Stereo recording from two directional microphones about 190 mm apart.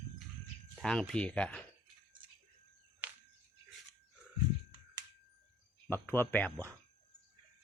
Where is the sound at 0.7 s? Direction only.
5° left (ahead or behind).